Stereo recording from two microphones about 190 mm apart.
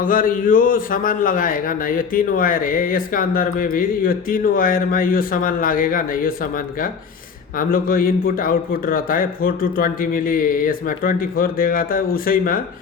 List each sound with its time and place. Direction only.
0.0 s a man's voice: 45° left (ahead or behind)